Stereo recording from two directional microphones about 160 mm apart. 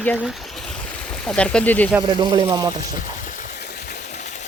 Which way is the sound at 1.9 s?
20° right (ahead or behind).